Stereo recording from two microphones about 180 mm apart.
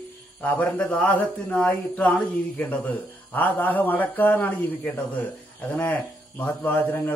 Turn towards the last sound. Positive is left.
turn(degrees=10)  # may be behind; listen again after turning